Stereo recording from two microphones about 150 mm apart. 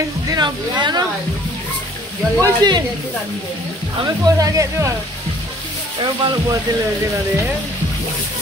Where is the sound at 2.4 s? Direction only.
30° right (ahead or behind).